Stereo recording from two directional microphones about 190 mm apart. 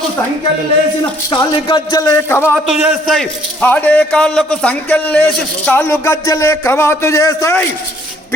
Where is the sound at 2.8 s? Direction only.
Centre (ahead or behind).